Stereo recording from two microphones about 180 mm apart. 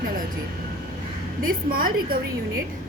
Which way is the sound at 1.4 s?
50° right (ahead or behind).